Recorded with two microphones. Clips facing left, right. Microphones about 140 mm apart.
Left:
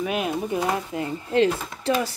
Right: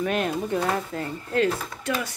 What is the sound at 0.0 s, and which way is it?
Speech, 5° left (ahead or behind).